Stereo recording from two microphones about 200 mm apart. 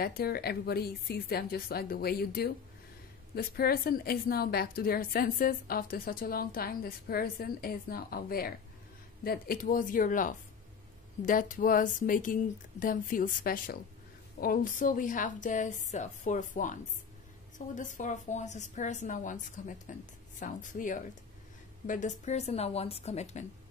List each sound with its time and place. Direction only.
0.0 s a woman's voice: 50° left (ahead or behind); by 23.4 s 35° left (ahead or behind)